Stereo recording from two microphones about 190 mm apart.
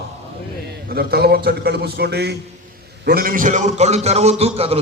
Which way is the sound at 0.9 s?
55° right (ahead or behind).